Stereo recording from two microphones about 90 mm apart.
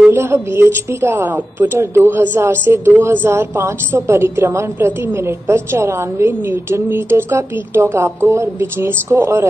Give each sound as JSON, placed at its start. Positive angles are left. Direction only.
{"t": 0.1, "sound": "a woman's voice", "side_deg": -30}